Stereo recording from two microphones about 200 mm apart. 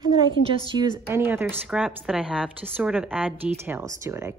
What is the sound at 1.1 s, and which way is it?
Speech, 10° right (ahead or behind).